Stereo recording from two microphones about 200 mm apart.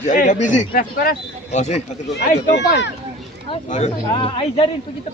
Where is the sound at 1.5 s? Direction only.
35° left (ahead or behind).